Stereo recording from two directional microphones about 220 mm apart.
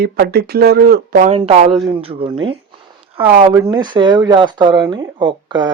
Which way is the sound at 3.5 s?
15° right (ahead or behind).